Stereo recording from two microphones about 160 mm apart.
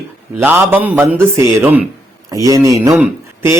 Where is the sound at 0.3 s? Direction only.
15° right (ahead or behind).